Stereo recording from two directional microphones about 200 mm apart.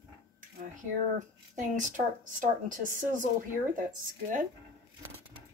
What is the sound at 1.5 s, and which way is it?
A woman's voice, 40° right (ahead or behind).